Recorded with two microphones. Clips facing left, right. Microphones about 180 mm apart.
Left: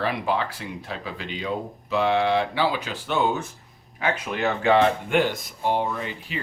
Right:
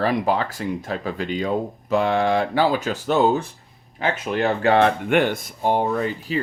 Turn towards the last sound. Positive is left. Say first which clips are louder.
# right 8 dB
turn(degrees=-40)  # may be behind; listen again after turning